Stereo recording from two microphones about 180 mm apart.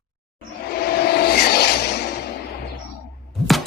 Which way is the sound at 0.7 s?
60° left (ahead or behind).